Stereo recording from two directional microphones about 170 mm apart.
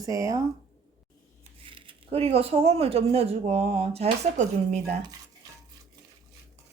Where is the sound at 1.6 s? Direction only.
30° right (ahead or behind).